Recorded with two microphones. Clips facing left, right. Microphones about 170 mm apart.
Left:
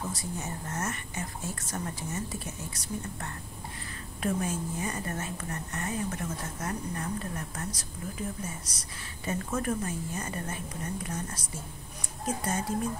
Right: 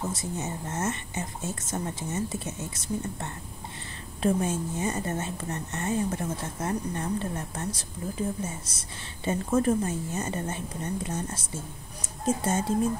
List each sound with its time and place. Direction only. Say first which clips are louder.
0.1 s a woman's voice: right 4 dB; 20° right (ahead or behind)